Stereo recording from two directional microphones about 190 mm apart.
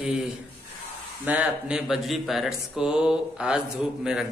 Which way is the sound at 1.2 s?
5° right (ahead or behind).